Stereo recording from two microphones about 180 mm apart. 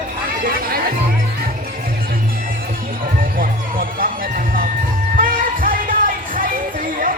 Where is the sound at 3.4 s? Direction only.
50° right (ahead or behind).